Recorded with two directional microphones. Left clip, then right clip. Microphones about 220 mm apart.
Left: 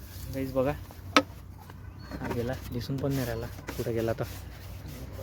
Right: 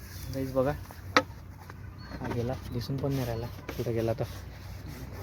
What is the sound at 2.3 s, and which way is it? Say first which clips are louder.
Speech: even; centre (ahead or behind).